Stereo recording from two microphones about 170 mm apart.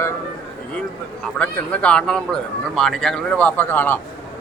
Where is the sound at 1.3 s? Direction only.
5° left (ahead or behind).